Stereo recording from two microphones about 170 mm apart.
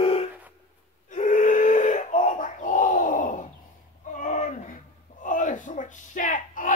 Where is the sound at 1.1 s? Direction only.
50° left (ahead or behind).